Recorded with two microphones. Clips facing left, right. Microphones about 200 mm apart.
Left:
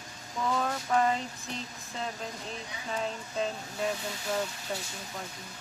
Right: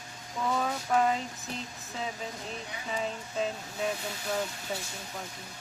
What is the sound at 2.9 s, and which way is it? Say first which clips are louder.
Speech: even; centre (ahead or behind).